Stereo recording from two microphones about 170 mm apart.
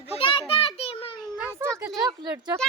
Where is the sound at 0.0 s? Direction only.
35° left (ahead or behind).